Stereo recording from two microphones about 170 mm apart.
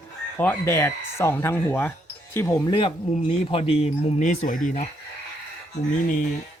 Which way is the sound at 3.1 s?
35° left (ahead or behind).